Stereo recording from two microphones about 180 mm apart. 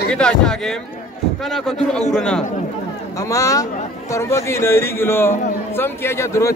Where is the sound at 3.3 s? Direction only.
20° left (ahead or behind).